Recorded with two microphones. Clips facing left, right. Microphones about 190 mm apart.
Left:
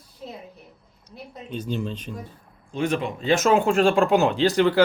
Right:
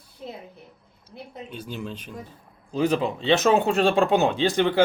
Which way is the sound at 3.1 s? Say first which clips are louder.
Left 1 dB; 25° right (ahead or behind).